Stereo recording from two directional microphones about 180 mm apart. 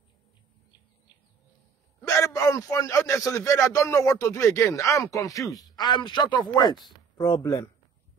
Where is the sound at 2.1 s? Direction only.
20° left (ahead or behind).